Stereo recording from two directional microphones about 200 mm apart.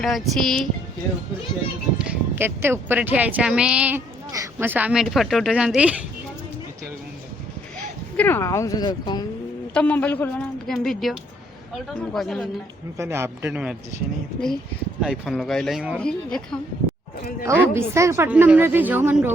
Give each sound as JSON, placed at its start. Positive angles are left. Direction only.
{"t": 0.0, "sound": "speech", "side_deg": 0}
{"t": 2.0, "sound": "speech", "side_deg": -10}
{"t": 8.1, "sound": "a woman's voice", "side_deg": 10}
{"t": 9.7, "sound": "a woman's voice", "side_deg": 5}
{"t": 13.0, "sound": "speech", "side_deg": -15}
{"t": 15.0, "sound": "speech", "side_deg": 0}
{"t": 17.4, "sound": "speech", "side_deg": -15}